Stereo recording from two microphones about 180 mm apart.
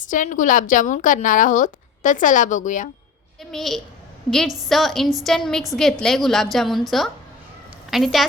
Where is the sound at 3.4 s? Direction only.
Centre (ahead or behind).